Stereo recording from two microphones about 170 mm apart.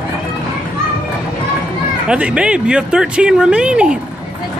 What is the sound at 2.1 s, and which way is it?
Speech, 5° right (ahead or behind).